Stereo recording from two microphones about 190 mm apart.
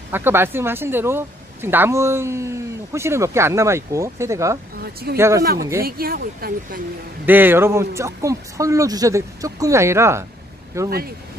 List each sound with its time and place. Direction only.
0.1 s speech: 10° right (ahead or behind)
5.9 s speech: 50° right (ahead or behind)
7.2 s speech: 10° right (ahead or behind)